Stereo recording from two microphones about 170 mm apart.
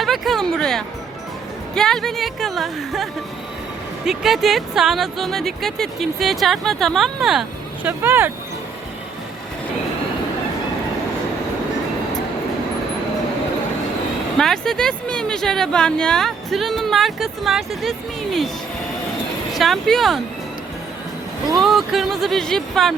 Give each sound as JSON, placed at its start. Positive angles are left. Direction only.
{"t": 0.0, "sound": "music", "side_deg": 0}
{"t": 1.7, "sound": "speech", "side_deg": 0}
{"t": 14.3, "sound": "speech", "side_deg": 5}
{"t": 19.5, "sound": "speech", "side_deg": 0}
{"t": 21.5, "sound": "speech", "side_deg": 0}